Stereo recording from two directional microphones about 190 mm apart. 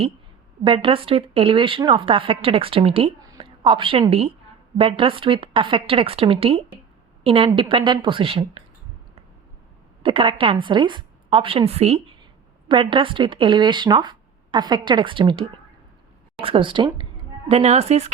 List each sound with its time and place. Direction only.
0.6 s a woman's voice: 25° right (ahead or behind)
10.0 s a woman's voice: 25° right (ahead or behind)